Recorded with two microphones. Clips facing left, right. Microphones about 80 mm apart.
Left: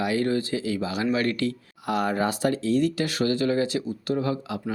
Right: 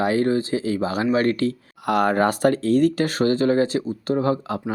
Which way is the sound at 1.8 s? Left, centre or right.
Right.